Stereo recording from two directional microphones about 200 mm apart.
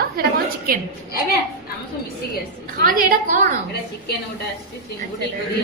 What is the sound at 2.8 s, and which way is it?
Speech, 45° right (ahead or behind).